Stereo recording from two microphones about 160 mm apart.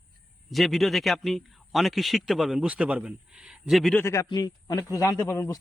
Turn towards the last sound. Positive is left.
turn(degrees=20)  # may be behind; listen again after turning